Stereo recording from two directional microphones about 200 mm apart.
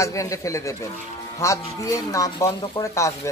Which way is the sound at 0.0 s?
15° left (ahead or behind).